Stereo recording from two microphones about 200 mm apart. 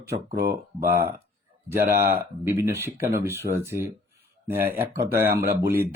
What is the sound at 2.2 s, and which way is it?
Speech, 10° right (ahead or behind).